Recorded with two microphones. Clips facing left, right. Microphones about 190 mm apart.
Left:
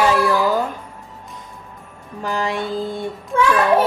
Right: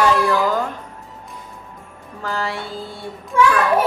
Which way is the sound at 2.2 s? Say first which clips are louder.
Left 3 dB; 15° left (ahead or behind).